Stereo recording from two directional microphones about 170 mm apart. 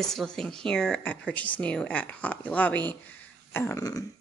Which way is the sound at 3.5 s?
15° left (ahead or behind).